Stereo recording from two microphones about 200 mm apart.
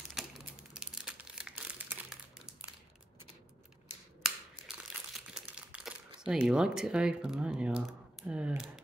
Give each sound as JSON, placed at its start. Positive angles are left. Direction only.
{"t": 0.2, "sound": "a sound", "side_deg": 0}
{"t": 0.7, "sound": "crumpling", "side_deg": -5}
{"t": 4.2, "sound": "crumpling", "side_deg": 0}
{"t": 7.8, "sound": "speech", "side_deg": 0}